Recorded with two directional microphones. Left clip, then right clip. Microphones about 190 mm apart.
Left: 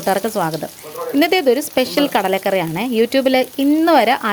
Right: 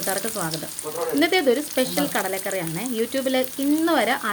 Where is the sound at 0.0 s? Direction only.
40° left (ahead or behind).